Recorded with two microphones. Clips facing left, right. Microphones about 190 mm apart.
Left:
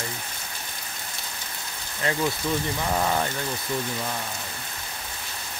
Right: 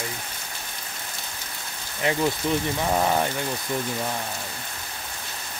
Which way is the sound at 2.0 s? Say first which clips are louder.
Right 2 dB; 20° right (ahead or behind).